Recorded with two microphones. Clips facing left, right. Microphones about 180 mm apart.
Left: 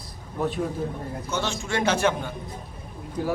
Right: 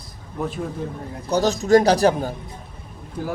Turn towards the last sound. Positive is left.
turn(degrees=0)  # may be behind; listen again after turning